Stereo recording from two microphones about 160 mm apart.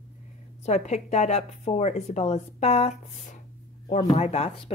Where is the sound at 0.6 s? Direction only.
45° left (ahead or behind).